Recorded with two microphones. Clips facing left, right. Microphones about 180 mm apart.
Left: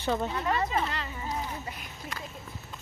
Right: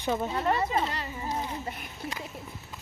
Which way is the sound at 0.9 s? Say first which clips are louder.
Right 1 dB; 20° right (ahead or behind).